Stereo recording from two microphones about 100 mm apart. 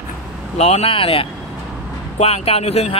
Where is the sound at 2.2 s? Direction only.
90° left.